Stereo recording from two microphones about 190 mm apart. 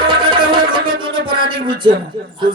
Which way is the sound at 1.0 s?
25° right (ahead or behind).